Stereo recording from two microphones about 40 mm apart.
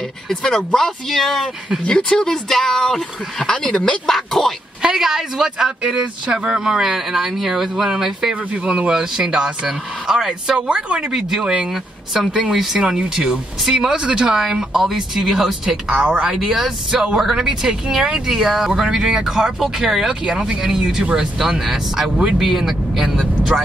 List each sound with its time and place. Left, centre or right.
0.3 s speech: centre
1.9 s speech: left
4.8 s speech: centre
7.7 s speech: centre
8.6 s speech: right
8.9 s speech: centre
10.7 s speech: right
11.1 s speech: centre
13.9 s speech: right
14.3 s speech: centre
16.9 s speech: right
21.4 s speech: centre